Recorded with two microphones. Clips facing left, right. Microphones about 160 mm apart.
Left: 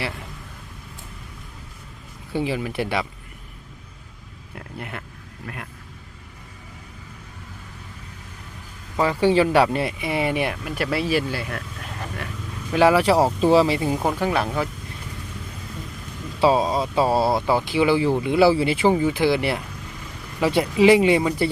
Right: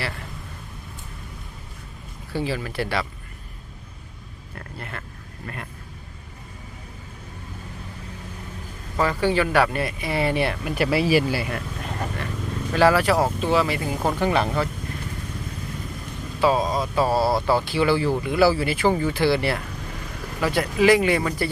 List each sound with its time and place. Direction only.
2.3 s speech: 20° left (ahead or behind)
4.5 s speech: 15° left (ahead or behind)
9.0 s speech: 25° left (ahead or behind)
10.6 s speech: centre (ahead or behind)
12.7 s speech: 20° left (ahead or behind)
14.1 s speech: 5° left (ahead or behind)
16.4 s speech: 30° left (ahead or behind)